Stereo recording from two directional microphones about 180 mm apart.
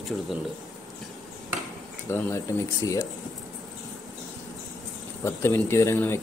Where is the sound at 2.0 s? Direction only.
15° left (ahead or behind).